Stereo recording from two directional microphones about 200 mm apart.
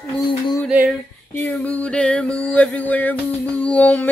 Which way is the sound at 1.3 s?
10° left (ahead or behind).